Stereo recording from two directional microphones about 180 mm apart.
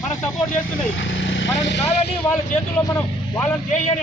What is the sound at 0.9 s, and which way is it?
Speech, 90° left.